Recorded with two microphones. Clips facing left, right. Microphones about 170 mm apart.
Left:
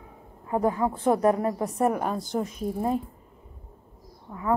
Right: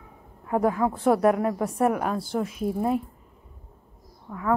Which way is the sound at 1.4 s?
10° left (ahead or behind).